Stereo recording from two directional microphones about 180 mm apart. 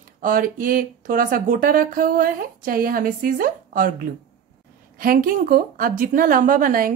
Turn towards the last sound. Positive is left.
turn(degrees=-50)  # may be behind; listen again after turning